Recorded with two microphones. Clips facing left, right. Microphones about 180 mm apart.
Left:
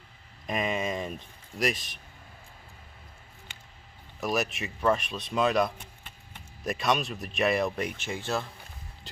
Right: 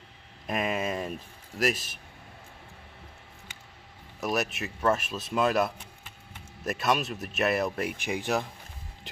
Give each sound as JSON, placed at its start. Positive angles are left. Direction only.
{"t": 0.5, "sound": "speech", "side_deg": -5}
{"t": 4.2, "sound": "speech", "side_deg": 0}
{"t": 8.0, "sound": "speech", "side_deg": -15}